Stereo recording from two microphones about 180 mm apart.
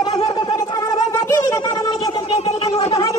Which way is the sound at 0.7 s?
20° left (ahead or behind).